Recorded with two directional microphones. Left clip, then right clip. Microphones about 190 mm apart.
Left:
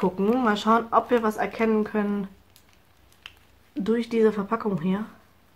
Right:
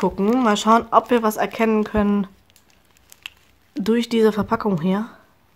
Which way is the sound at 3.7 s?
35° right (ahead or behind).